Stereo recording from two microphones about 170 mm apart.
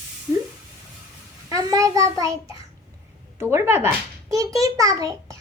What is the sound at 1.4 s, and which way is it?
Child singing, 20° right (ahead or behind).